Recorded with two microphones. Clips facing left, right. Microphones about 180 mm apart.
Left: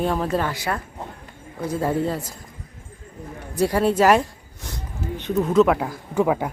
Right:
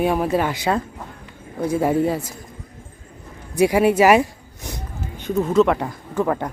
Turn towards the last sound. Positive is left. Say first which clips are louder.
# left 1 dB
turn(degrees=5)  # may be behind; listen again after turning